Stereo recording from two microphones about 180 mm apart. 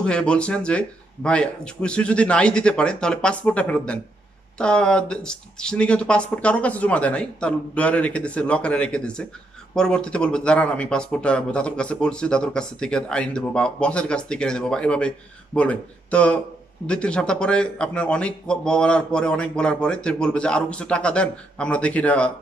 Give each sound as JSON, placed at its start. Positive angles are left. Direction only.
{"t": 0.0, "sound": "speech", "side_deg": 5}